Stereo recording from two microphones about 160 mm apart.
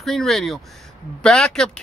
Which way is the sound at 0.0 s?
Centre (ahead or behind).